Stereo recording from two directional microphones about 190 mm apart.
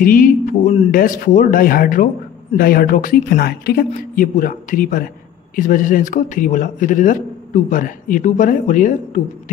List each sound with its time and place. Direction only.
0.0 s a man's voice: 45° left (ahead or behind)